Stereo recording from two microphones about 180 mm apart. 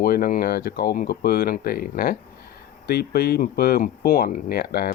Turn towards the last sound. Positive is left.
turn(degrees=55)  # may be behind; listen again after turning